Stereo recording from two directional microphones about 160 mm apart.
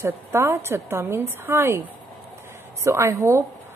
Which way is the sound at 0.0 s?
15° right (ahead or behind).